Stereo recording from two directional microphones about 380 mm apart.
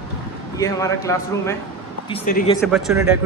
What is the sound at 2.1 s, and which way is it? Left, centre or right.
Speech, centre.